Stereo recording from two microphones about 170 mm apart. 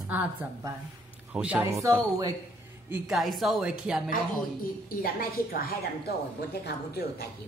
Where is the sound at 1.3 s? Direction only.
5° right (ahead or behind).